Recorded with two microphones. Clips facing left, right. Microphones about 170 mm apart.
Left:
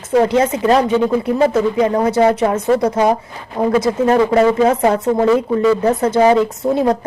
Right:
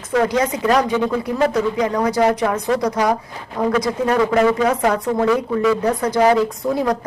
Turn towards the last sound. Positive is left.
turn(degrees=25)  # may be behind; listen again after turning